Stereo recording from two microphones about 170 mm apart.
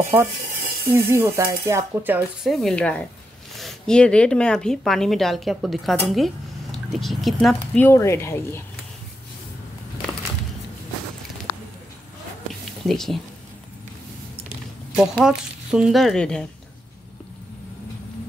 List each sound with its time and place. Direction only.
0.9 s speech: 15° right (ahead or behind)
2.4 s speech: centre (ahead or behind)
7.8 s speech: 15° left (ahead or behind)
12.8 s speech: centre (ahead or behind)
15.0 s speech: 5° right (ahead or behind)